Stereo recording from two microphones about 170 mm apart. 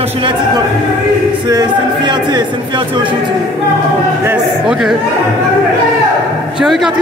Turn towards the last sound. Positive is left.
turn(degrees=0)  # may be behind; listen again after turning